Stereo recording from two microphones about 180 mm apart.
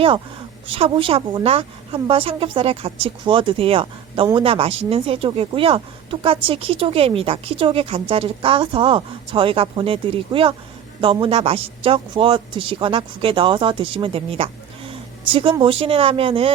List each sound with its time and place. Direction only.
0.7 s speech: 30° right (ahead or behind)